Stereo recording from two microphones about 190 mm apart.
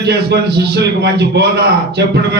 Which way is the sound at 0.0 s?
60° right (ahead or behind).